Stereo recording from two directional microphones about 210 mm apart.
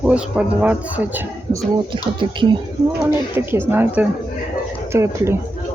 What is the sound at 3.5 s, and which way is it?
Speech, 10° right (ahead or behind).